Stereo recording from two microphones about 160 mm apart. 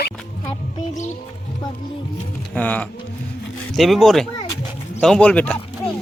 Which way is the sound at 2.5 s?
10° left (ahead or behind).